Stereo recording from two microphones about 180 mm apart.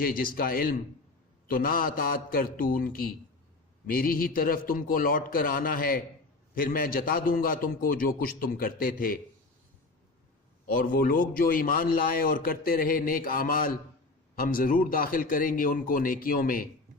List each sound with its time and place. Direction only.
0.0 s a man's voice: 55° left (ahead or behind)
10.8 s a man's voice: 55° left (ahead or behind)